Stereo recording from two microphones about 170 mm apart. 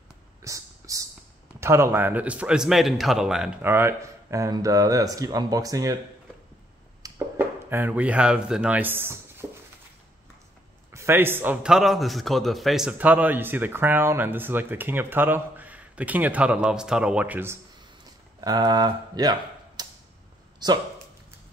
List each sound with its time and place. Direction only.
0.4 s whispering: 20° right (ahead or behind)
1.6 s a man's voice: 15° right (ahead or behind)
3.6 s speech: 15° right (ahead or behind)
7.0 s a sound: 10° right (ahead or behind)
10.9 s a man's voice: 15° right (ahead or behind)
18.4 s speech: 20° right (ahead or behind)
19.8 s tick-tock: 25° right (ahead or behind)
20.5 s a sound: 25° right (ahead or behind)